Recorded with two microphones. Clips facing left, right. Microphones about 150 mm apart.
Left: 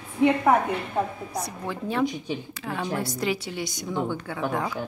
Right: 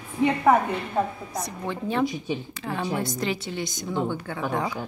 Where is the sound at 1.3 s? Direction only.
5° left (ahead or behind).